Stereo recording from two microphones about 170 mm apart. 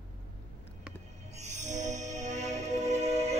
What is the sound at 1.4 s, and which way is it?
Music, 45° right (ahead or behind).